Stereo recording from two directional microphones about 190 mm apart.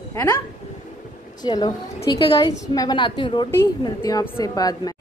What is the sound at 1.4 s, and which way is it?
A woman's voice, 20° left (ahead or behind).